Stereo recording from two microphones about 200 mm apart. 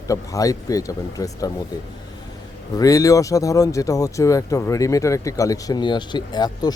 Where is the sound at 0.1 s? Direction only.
15° left (ahead or behind).